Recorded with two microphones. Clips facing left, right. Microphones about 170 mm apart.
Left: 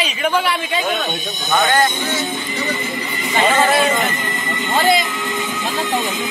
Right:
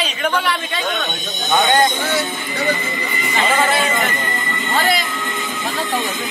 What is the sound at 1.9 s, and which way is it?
Speech, 60° right (ahead or behind).